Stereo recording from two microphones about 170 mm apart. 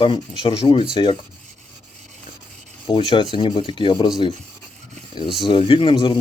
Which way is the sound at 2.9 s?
30° left (ahead or behind).